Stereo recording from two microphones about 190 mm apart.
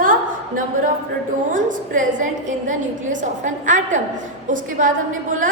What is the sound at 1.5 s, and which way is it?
A woman's voice, 45° right (ahead or behind).